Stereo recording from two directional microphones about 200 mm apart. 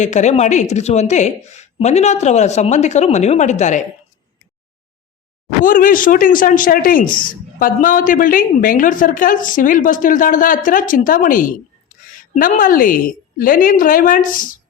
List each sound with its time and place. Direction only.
0.0 s a woman's voice: 35° left (ahead or behind)
5.6 s a woman's voice: 45° left (ahead or behind)